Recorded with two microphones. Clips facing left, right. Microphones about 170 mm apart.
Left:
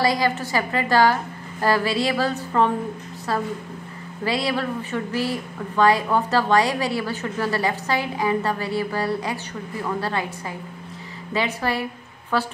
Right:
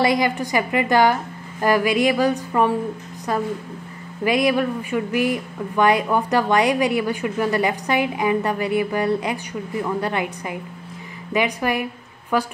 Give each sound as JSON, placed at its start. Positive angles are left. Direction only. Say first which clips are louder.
{"t": 0.0, "sound": "speech", "louder": "right 2 dB", "side_deg": -20}
{"t": 4.2, "sound": "speech", "louder": "right 5 dB", "side_deg": -20}